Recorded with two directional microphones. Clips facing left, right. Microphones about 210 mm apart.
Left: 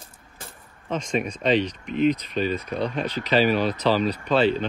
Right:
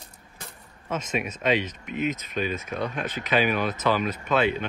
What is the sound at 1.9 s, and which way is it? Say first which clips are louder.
Speech: left 6 dB; 50° right (ahead or behind).